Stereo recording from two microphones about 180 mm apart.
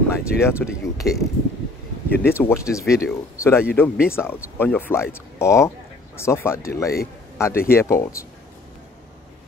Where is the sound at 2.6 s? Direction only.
15° left (ahead or behind).